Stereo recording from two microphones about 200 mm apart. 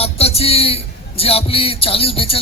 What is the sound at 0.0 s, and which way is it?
A man's voice, 30° left (ahead or behind).